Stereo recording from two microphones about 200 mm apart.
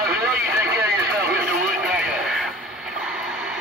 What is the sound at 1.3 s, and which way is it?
Radio, 5° right (ahead or behind).